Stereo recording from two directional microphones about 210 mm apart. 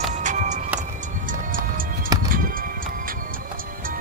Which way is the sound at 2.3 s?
40° right (ahead or behind).